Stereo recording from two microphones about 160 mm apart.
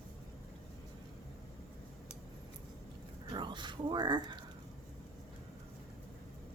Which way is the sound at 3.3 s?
30° right (ahead or behind).